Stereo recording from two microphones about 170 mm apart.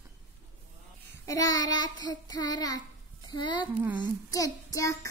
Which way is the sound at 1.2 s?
20° left (ahead or behind).